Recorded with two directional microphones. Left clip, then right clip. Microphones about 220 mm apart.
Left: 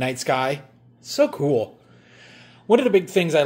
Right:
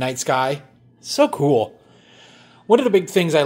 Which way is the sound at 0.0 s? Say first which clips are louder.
Right 2 dB; 10° right (ahead or behind).